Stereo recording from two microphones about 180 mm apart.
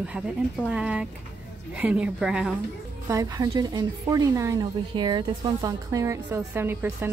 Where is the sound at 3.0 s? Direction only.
20° right (ahead or behind).